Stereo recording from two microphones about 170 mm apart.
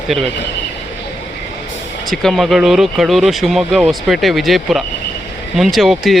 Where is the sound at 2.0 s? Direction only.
Centre (ahead or behind).